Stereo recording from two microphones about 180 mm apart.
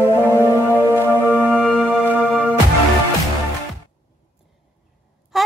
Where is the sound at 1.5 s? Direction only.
10° right (ahead or behind).